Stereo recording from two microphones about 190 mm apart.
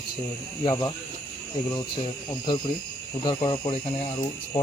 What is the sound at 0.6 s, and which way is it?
Speech, 20° left (ahead or behind).